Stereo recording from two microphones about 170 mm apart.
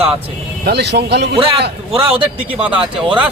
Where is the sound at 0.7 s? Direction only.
75° right (ahead or behind).